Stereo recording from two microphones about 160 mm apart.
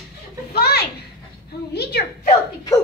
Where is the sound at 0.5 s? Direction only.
85° left.